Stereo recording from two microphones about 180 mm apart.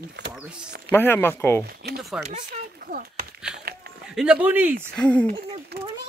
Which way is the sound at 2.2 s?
45° right (ahead or behind).